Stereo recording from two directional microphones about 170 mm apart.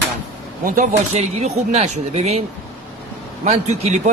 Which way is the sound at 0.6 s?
55° right (ahead or behind).